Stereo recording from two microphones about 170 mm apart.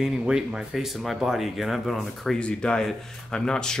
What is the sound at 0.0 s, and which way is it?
Speech, 5° right (ahead or behind).